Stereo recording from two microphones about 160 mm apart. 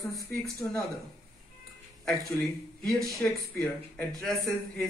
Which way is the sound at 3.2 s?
5° left (ahead or behind).